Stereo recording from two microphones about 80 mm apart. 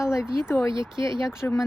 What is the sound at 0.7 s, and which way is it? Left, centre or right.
Speech, right.